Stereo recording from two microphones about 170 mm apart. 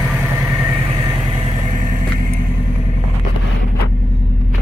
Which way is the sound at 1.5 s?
45° right (ahead or behind).